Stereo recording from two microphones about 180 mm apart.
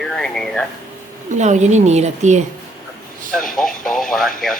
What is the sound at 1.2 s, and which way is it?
A woman's voice, 40° right (ahead or behind).